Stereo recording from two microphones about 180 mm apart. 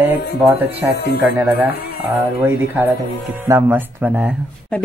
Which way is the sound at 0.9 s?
65° left (ahead or behind).